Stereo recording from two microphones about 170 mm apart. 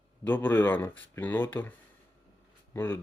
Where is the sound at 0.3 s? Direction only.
10° left (ahead or behind).